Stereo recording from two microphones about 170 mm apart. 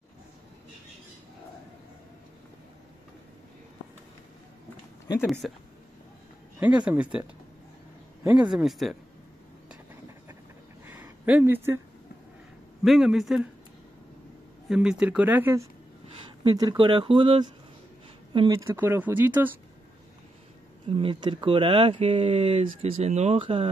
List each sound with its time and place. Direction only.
5.4 s speech: centre (ahead or behind)
6.6 s speech: 10° right (ahead or behind)
8.2 s speech: 15° right (ahead or behind)
8.5 s speech: centre (ahead or behind)
10.9 s a sound: 10° right (ahead or behind)
12.8 s speech: centre (ahead or behind)
14.7 s speech: 5° right (ahead or behind)
16.1 s speech: 30° right (ahead or behind)
18.5 s speech: 10° right (ahead or behind)
20.9 s speech: 30° right (ahead or behind)